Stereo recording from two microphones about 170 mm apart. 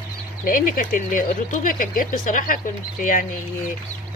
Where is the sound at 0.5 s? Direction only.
55° left (ahead or behind).